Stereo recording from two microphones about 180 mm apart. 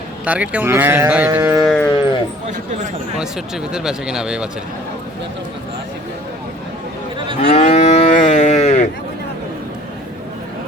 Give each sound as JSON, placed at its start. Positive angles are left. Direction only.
{"t": 0.3, "sound": "speech", "side_deg": -10}
{"t": 1.6, "sound": "speech", "side_deg": 5}
{"t": 2.5, "sound": "speech", "side_deg": -40}
{"t": 3.2, "sound": "speech", "side_deg": -5}
{"t": 7.4, "sound": "moo", "side_deg": 40}